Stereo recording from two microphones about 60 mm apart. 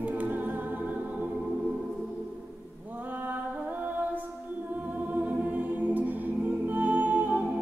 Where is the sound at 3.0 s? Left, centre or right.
Right.